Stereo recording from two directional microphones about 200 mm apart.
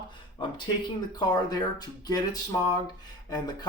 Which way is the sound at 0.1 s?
25° left (ahead or behind).